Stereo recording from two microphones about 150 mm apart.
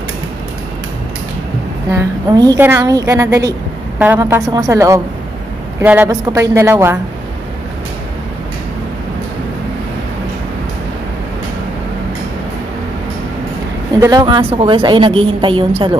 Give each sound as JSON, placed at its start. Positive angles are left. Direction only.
{"t": 1.9, "sound": "a woman's voice", "side_deg": -25}
{"t": 13.9, "sound": "a woman's voice", "side_deg": -20}
{"t": 14.2, "sound": "a woman's voice", "side_deg": -35}